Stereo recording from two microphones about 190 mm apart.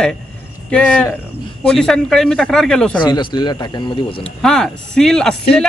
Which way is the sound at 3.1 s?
20° left (ahead or behind).